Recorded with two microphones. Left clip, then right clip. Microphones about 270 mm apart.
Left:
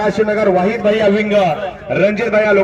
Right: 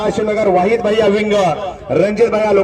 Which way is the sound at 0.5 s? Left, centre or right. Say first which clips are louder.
Right 1 dB; right.